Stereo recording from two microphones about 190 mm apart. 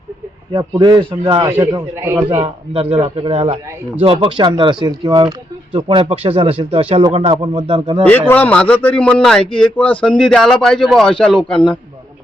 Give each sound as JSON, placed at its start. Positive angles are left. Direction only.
{"t": 0.5, "sound": "a man's voice", "side_deg": -25}
{"t": 2.4, "sound": "speech", "side_deg": -30}
{"t": 8.3, "sound": "speech", "side_deg": 10}